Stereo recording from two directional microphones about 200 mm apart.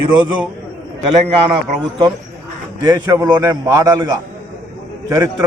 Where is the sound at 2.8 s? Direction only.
20° right (ahead or behind).